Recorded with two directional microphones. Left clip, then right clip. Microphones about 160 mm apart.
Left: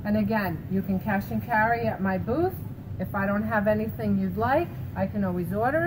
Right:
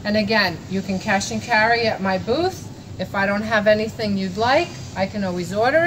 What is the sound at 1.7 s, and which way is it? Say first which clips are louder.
Speech: right 7 dB; 20° right (ahead or behind).